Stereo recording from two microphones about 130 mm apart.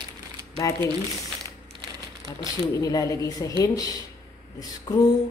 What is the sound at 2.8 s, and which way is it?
A man's voice, 25° left (ahead or behind).